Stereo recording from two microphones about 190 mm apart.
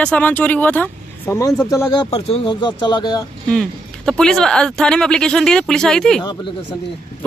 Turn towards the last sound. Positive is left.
turn(degrees=20)  # may be behind; listen again after turning